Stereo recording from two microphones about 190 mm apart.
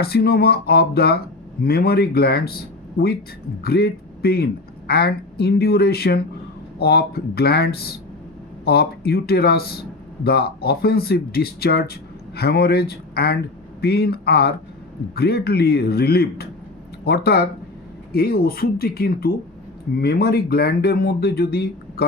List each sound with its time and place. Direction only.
0.0 s speech: 55° left (ahead or behind)